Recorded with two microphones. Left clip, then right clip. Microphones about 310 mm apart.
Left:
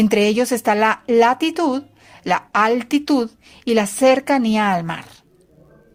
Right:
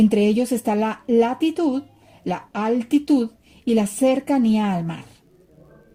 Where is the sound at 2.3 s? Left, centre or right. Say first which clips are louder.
Left 7 dB; left.